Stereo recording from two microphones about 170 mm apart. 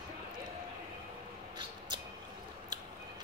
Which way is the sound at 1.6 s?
25° right (ahead or behind).